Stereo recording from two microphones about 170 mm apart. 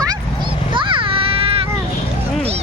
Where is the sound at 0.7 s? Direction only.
30° right (ahead or behind).